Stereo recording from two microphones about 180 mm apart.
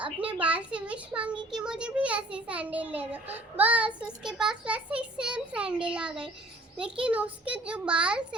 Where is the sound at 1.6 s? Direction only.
5° right (ahead or behind).